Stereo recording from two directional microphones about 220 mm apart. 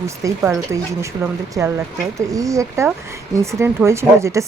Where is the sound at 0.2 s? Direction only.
15° right (ahead or behind).